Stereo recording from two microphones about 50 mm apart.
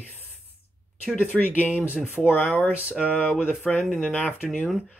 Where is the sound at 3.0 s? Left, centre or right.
Left.